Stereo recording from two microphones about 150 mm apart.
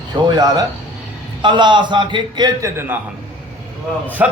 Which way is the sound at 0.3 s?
25° right (ahead or behind).